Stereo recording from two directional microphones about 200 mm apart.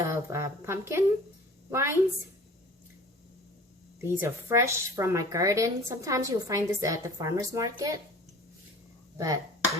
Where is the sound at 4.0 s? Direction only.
10° right (ahead or behind).